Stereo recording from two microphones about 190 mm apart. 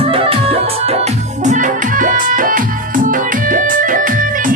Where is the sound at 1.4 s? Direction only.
40° right (ahead or behind).